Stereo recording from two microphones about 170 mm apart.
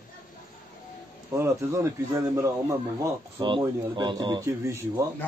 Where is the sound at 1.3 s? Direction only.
15° right (ahead or behind).